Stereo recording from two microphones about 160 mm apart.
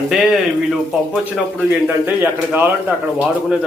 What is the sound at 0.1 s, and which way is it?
Speech, centre (ahead or behind).